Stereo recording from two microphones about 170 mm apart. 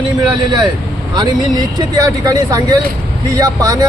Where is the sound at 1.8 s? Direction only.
20° right (ahead or behind).